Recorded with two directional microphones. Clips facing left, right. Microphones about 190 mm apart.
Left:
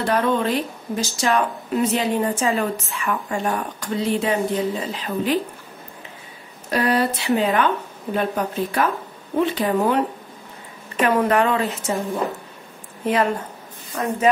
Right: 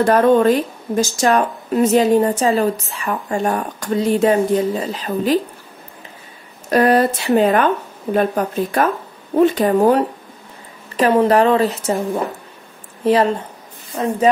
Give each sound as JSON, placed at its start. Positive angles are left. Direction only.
{"t": 0.0, "sound": "speech", "side_deg": -45}
{"t": 6.7, "sound": "speech", "side_deg": -45}
{"t": 13.0, "sound": "a woman's voice", "side_deg": -30}
{"t": 13.9, "sound": "speech", "side_deg": -20}